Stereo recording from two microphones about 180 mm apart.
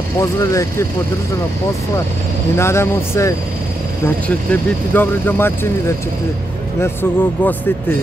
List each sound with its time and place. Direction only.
0.2 s speech: 15° left (ahead or behind)
2.5 s speech: 15° left (ahead or behind)
4.5 s speech: 10° left (ahead or behind)
6.8 s speech: 10° left (ahead or behind)